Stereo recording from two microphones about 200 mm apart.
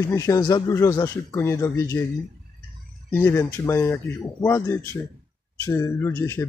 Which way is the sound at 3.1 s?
10° left (ahead or behind).